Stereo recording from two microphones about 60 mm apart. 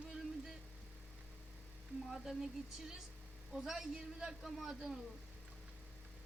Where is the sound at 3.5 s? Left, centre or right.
Centre.